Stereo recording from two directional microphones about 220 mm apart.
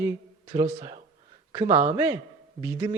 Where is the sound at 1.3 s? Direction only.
20° right (ahead or behind).